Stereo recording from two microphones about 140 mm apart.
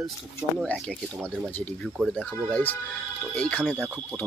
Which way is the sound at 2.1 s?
10° left (ahead or behind).